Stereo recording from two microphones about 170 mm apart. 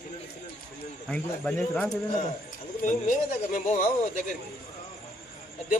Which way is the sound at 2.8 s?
50° left (ahead or behind).